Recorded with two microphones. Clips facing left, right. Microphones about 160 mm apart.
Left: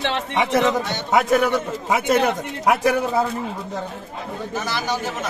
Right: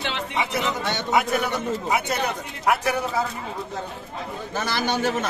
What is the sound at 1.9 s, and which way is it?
Speech, 90° left.